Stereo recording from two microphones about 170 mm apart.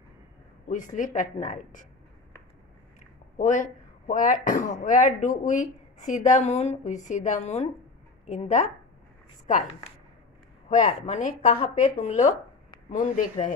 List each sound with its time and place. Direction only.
0.7 s speech: 50° left (ahead or behind)
3.0 s speech: 45° left (ahead or behind)
10.9 s speech: 40° left (ahead or behind)